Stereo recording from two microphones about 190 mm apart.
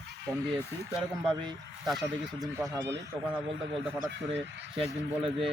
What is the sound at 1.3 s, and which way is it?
Speech, 25° right (ahead or behind).